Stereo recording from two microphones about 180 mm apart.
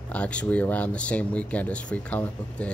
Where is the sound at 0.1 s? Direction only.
5° left (ahead or behind).